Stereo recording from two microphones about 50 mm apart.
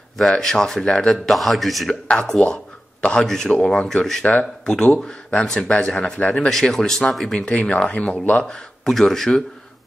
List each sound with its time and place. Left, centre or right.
0.4 s speech: centre
1.1 s a man's voice: centre
2.0 s speech: centre
2.4 s a sound: centre
3.3 s speech: centre
3.5 s speech: left
4.2 s speech: left
4.6 s speech: centre
8.8 s speech: centre